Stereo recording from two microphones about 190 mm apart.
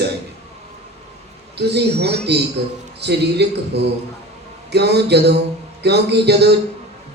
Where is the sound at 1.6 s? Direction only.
60° right (ahead or behind).